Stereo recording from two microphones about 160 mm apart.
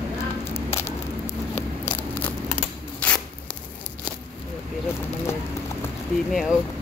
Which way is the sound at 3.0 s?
10° left (ahead or behind).